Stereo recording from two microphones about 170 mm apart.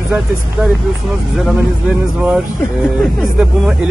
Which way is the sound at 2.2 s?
5° right (ahead or behind).